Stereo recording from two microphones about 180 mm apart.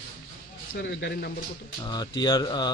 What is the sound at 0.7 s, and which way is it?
Speech, 65° left (ahead or behind).